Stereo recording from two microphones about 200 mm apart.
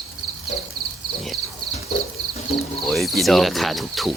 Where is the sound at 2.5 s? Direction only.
Centre (ahead or behind).